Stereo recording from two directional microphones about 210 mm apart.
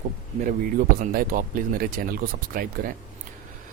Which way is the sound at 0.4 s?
40° right (ahead or behind).